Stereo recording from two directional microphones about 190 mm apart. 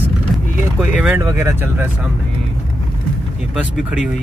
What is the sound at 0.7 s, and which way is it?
Speech, 5° right (ahead or behind).